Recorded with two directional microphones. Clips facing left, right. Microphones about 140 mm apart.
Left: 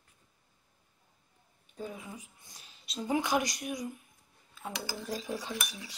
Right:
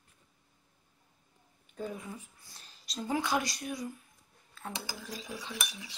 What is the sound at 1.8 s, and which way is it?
Speech, 10° left (ahead or behind).